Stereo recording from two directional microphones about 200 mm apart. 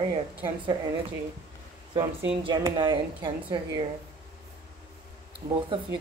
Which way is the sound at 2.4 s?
20° right (ahead or behind).